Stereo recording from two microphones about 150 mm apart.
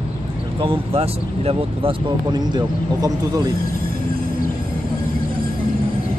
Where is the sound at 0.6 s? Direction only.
40° right (ahead or behind).